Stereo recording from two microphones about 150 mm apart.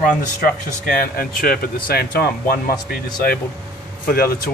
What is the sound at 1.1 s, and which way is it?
Speech, 90° left.